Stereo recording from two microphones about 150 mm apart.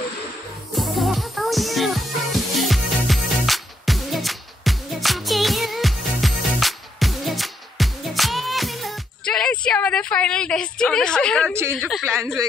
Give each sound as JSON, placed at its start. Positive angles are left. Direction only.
{"t": 0.7, "sound": "music", "side_deg": 0}
{"t": 12.0, "sound": "a man's voice", "side_deg": -15}